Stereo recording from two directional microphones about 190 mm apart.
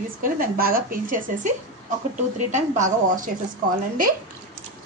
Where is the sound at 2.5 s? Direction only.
40° right (ahead or behind).